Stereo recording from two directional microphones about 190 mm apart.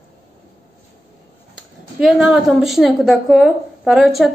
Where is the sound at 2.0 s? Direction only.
5° right (ahead or behind).